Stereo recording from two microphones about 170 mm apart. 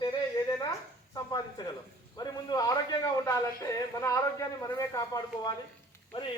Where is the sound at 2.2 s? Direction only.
25° left (ahead or behind).